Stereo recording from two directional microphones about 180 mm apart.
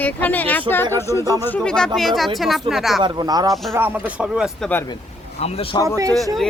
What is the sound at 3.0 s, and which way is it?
A man's voice, 25° right (ahead or behind).